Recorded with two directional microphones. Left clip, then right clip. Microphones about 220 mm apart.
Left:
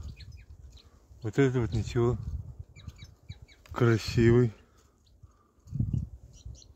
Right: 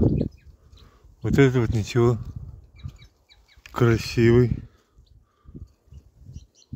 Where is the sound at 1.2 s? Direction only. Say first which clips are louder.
Right 8 dB; 25° right (ahead or behind).